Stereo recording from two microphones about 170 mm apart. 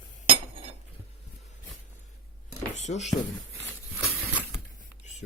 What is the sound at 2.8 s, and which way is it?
Speech, 40° left (ahead or behind).